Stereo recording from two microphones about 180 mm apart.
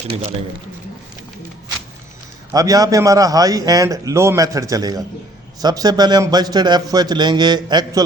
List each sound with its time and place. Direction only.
2.5 s a man's voice: 20° right (ahead or behind)